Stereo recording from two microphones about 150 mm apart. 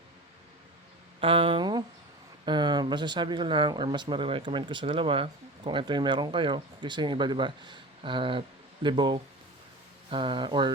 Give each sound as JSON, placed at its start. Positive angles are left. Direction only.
{"t": 1.2, "sound": "speech", "side_deg": -35}